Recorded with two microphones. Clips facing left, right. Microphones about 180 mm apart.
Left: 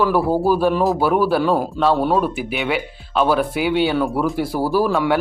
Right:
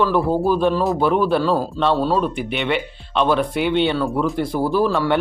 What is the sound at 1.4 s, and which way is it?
Speech, 15° left (ahead or behind).